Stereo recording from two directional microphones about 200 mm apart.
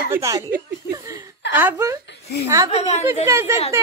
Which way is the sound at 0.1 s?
15° right (ahead or behind).